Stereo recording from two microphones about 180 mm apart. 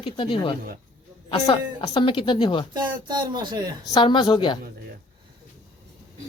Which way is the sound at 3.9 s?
25° left (ahead or behind).